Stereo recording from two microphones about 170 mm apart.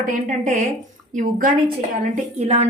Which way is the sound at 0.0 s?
50° right (ahead or behind).